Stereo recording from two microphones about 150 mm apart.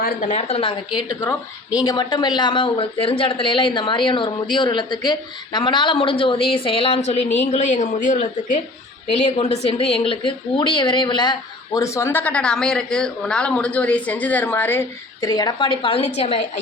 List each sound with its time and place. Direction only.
0.0 s a woman's voice: 60° left (ahead or behind); by 0.8 s 40° left (ahead or behind)
0.9 s a woman's voice: 25° left (ahead or behind)
15.2 s a woman's voice: 25° left (ahead or behind); by 16.4 s 40° left (ahead or behind)